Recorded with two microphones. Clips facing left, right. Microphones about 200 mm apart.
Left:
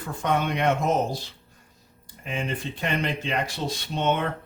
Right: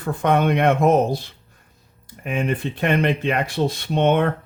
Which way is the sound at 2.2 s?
55° right (ahead or behind).